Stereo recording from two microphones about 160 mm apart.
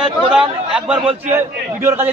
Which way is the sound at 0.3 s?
5° right (ahead or behind).